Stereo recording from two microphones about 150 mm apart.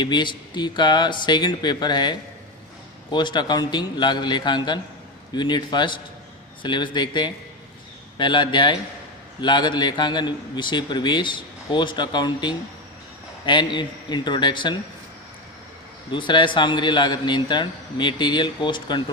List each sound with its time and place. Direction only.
0.0 s a man's voice: 30° left (ahead or behind)
16.1 s a man's voice: 30° left (ahead or behind)